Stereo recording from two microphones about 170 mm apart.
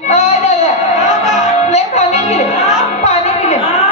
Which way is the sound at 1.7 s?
40° left (ahead or behind).